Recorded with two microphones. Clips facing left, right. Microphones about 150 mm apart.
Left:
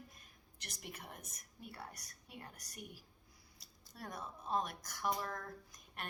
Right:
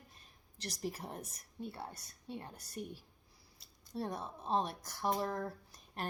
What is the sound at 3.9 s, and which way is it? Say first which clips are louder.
A woman's voice: right 7 dB; 30° right (ahead or behind).